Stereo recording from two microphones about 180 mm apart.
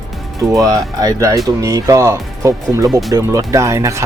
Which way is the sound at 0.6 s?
20° right (ahead or behind).